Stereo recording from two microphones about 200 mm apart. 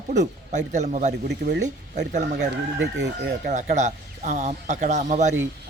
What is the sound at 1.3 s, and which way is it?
Speech, 60° right (ahead or behind).